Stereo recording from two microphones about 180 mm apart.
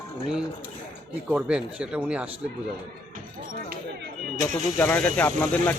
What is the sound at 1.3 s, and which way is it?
Speech, 5° right (ahead or behind).